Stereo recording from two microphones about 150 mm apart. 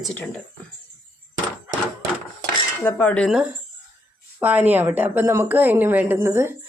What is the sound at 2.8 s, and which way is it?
Speech, 10° left (ahead or behind).